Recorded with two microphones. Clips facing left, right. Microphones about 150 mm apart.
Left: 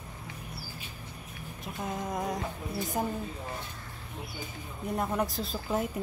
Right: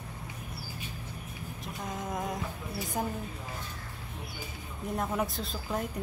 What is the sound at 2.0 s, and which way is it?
Humming, centre (ahead or behind).